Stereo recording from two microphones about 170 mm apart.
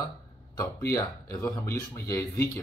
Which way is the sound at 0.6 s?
15° left (ahead or behind).